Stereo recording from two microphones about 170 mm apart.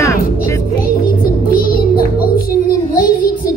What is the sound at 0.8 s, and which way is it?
Music, 60° left (ahead or behind).